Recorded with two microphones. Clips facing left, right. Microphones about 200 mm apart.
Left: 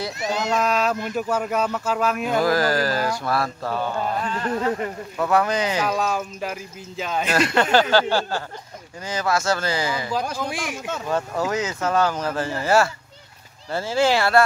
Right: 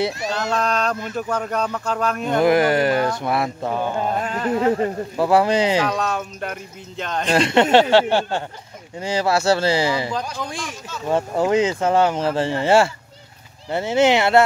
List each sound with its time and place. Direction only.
0.2 s speech: 20° left (ahead or behind)
0.6 s a sound: 5° left (ahead or behind)
0.9 s speech: 10° left (ahead or behind)
2.4 s speech: 20° right (ahead or behind)
5.8 s speech: centre (ahead or behind)
7.2 s speech: 25° right (ahead or behind)
10.3 s speech: 10° left (ahead or behind)
11.1 s speech: 25° right (ahead or behind)